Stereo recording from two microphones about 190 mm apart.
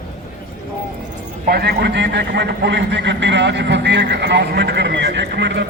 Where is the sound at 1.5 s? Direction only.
55° right (ahead or behind).